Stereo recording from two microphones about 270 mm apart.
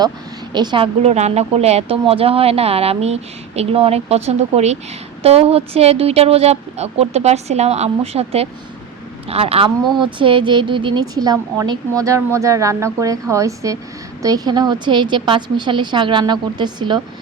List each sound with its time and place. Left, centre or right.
0.5 s a woman's voice: centre